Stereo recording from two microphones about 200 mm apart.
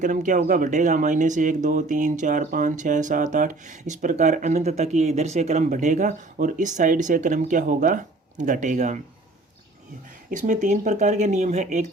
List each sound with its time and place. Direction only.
0.0 s speech: 40° right (ahead or behind)
10.2 s speech: 40° right (ahead or behind)